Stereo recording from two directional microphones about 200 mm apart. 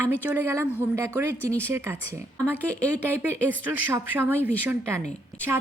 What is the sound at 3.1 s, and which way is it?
A woman's voice, 10° right (ahead or behind).